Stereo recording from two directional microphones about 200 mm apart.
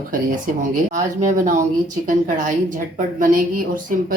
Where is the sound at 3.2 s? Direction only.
40° right (ahead or behind).